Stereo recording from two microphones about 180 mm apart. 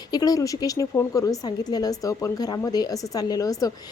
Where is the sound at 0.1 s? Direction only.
20° left (ahead or behind).